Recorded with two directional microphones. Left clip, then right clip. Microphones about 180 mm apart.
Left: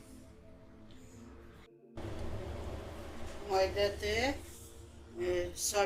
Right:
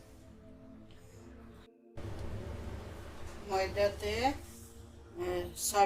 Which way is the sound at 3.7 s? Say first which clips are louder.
Right 1 dB; 25° right (ahead or behind).